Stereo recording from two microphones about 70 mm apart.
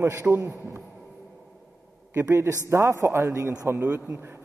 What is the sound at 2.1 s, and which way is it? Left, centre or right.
A man's voice, right.